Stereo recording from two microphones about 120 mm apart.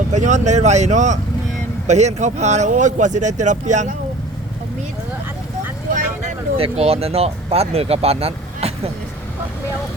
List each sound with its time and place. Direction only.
0.1 s speech: 85° right
1.9 s speech: 70° right (ahead or behind); by 3.9 s 90° right
6.6 s speech: 55° right (ahead or behind)